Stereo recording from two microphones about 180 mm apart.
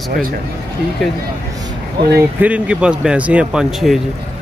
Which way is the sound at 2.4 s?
5° right (ahead or behind).